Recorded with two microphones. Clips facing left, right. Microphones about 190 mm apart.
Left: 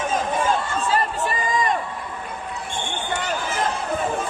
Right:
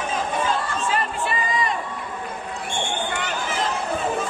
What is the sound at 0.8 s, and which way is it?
Crowd, 40° left (ahead or behind).